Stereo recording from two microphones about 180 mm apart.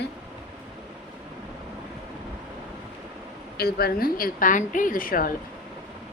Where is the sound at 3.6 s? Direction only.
60° left (ahead or behind).